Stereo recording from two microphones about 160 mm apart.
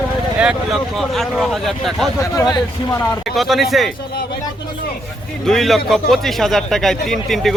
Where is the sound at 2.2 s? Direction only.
25° left (ahead or behind).